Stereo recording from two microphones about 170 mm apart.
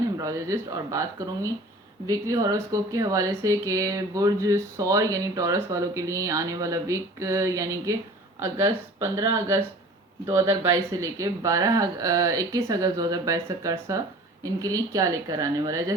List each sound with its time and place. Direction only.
0.2 s speech: 20° right (ahead or behind)
9.0 s speech: 20° right (ahead or behind)